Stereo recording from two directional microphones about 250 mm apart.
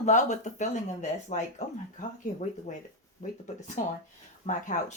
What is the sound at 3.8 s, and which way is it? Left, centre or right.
Speech, left.